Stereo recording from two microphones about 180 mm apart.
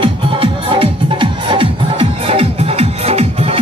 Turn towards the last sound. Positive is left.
turn(degrees=-35)  # may be behind; listen again after turning